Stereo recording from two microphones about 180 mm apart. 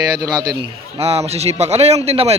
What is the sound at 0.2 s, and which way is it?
Speech, 20° right (ahead or behind).